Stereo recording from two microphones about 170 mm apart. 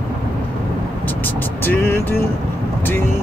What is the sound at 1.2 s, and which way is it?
Vehicle, 10° left (ahead or behind).